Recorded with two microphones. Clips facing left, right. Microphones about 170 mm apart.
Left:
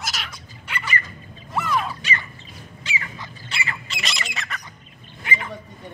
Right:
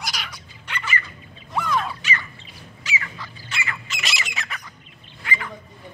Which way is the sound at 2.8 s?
30° left (ahead or behind).